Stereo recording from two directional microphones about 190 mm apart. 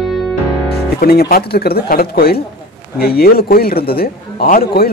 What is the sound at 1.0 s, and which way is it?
A man's voice, 55° left (ahead or behind).